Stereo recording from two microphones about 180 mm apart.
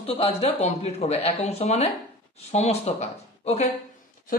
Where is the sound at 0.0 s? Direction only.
30° left (ahead or behind).